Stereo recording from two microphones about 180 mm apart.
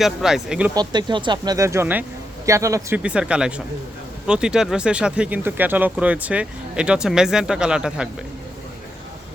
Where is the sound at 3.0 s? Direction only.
5° right (ahead or behind).